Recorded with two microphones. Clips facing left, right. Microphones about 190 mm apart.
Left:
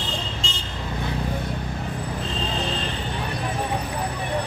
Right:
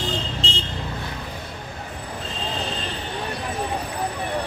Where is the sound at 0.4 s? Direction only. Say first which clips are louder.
Right 4 dB; 35° right (ahead or behind).